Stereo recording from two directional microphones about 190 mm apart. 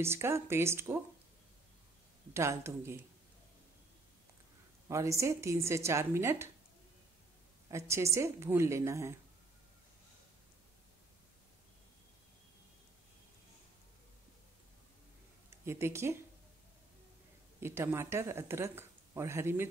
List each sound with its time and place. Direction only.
0.0 s speech: 15° right (ahead or behind)
2.3 s speech: 15° right (ahead or behind)
4.8 s speech: 15° right (ahead or behind)
7.7 s speech: 15° right (ahead or behind)
15.6 s speech: 15° right (ahead or behind)
17.6 s speech: 15° right (ahead or behind)